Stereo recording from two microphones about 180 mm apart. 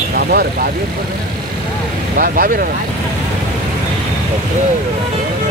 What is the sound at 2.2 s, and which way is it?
Speech, 55° right (ahead or behind).